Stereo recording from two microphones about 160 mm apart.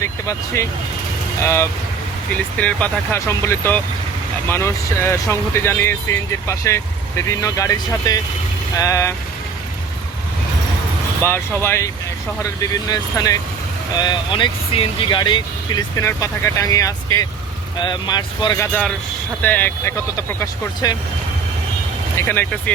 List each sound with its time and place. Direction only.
0.0 s speech: 15° left (ahead or behind)
11.2 s speech: 15° left (ahead or behind)
12.9 s speech: 20° left (ahead or behind)
18.6 s speech: 10° left (ahead or behind)
22.1 s speech: 15° left (ahead or behind)